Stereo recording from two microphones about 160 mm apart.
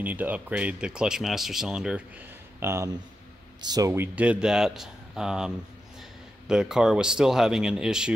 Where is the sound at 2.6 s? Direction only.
15° right (ahead or behind).